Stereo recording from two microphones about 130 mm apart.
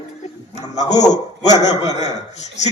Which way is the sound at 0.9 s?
30° left (ahead or behind).